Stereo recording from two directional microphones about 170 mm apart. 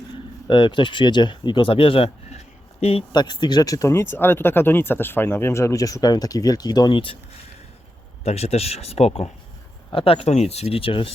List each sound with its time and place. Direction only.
0.4 s speech: 25° left (ahead or behind)
8.2 s speech: 35° left (ahead or behind)